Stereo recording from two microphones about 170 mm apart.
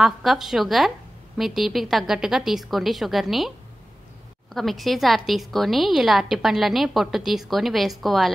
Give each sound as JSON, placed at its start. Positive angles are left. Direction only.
{"t": 0.0, "sound": "a woman's voice", "side_deg": 0}
{"t": 4.6, "sound": "a woman's voice", "side_deg": 0}